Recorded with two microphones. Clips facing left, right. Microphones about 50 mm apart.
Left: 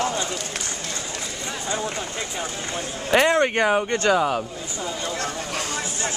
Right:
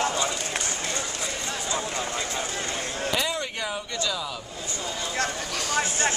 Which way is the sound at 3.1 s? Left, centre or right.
Left.